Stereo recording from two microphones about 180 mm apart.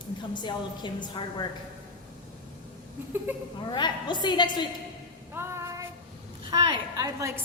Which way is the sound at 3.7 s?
25° left (ahead or behind).